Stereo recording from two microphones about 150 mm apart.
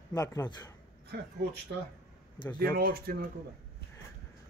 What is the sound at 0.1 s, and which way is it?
Speech, 20° left (ahead or behind).